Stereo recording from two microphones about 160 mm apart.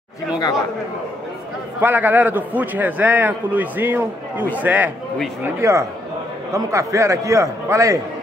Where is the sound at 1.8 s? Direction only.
10° right (ahead or behind).